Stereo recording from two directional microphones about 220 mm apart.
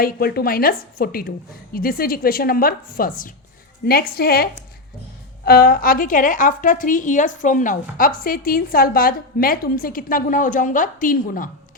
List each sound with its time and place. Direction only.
0.0 s a woman's voice: 45° left (ahead or behind)
5.5 s a woman's voice: 40° left (ahead or behind)